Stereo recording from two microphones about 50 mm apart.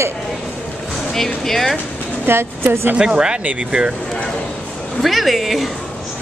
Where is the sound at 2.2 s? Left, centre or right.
Right.